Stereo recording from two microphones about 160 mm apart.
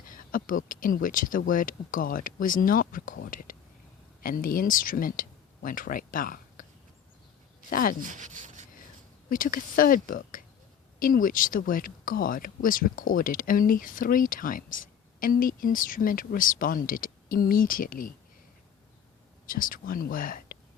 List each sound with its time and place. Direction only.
0.0 s speech: 60° left (ahead or behind)
7.7 s speech: 65° left (ahead or behind)
8.0 s speech: 50° right (ahead or behind)
9.3 s speech: 60° left (ahead or behind)
19.5 s speech: 60° left (ahead or behind)